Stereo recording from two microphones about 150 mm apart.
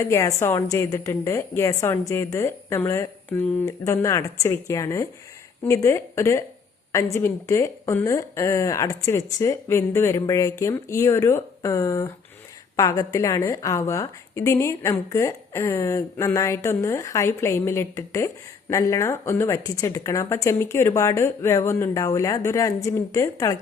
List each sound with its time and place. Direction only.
0.0 s a woman's voice: 20° left (ahead or behind)